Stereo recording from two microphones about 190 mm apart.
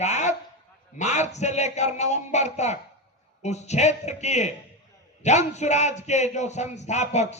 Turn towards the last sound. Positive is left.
turn(degrees=35)  # may be behind; listen again after turning